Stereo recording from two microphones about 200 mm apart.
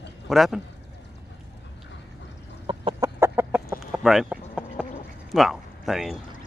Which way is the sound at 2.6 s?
25° right (ahead or behind).